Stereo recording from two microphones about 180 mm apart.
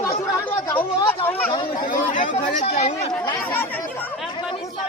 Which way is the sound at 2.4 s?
40° left (ahead or behind).